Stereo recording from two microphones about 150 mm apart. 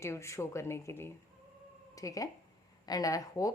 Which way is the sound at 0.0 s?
20° left (ahead or behind).